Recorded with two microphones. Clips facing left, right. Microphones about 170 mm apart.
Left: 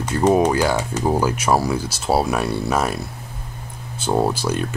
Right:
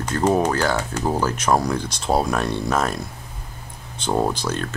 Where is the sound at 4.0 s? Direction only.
10° left (ahead or behind).